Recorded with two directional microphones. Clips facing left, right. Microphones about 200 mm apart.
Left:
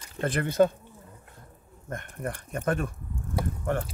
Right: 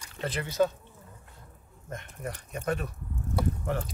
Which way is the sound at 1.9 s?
55° left (ahead or behind).